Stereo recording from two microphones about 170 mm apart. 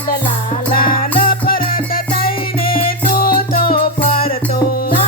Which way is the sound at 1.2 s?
55° left (ahead or behind).